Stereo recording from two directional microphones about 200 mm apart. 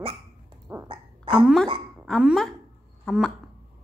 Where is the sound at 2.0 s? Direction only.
Centre (ahead or behind).